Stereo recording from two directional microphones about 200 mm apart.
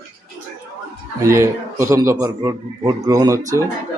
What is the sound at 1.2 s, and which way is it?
Speech, 15° right (ahead or behind).